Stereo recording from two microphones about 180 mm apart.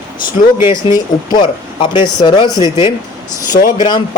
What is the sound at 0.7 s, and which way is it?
Speech, 25° left (ahead or behind).